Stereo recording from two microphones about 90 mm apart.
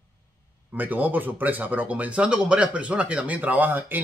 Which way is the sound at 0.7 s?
20° right (ahead or behind).